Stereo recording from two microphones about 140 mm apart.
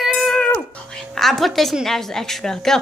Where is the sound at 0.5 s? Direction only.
5° left (ahead or behind).